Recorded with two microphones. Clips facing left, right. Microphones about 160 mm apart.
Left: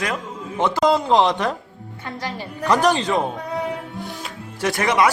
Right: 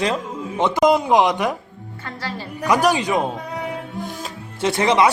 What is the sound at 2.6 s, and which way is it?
Speech, 10° right (ahead or behind).